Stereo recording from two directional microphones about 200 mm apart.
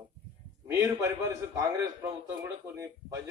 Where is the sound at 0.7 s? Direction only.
15° right (ahead or behind).